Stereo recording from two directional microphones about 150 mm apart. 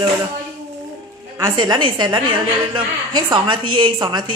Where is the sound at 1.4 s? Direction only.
25° right (ahead or behind).